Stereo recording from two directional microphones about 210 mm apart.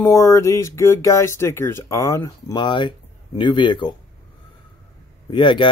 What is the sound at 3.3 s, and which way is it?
Speech, 20° left (ahead or behind).